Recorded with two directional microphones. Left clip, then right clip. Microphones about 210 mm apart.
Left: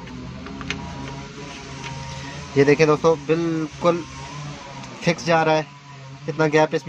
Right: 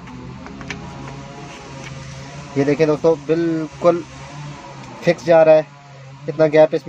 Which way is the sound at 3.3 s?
15° left (ahead or behind).